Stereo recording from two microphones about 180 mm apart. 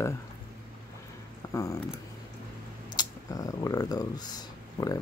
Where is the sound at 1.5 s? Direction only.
20° left (ahead or behind).